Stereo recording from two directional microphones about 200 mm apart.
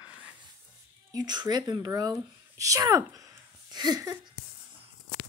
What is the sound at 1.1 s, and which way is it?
Speech, 20° right (ahead or behind).